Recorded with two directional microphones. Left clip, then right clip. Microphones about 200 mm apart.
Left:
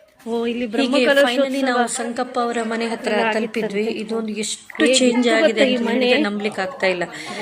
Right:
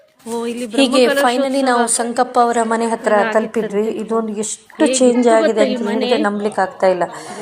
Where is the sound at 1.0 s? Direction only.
Centre (ahead or behind).